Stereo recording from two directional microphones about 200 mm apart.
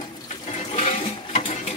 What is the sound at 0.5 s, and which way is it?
Sewing machine, 35° left (ahead or behind).